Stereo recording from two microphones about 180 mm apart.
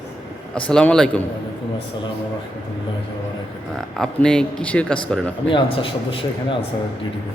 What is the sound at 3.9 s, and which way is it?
Speech, 5° left (ahead or behind).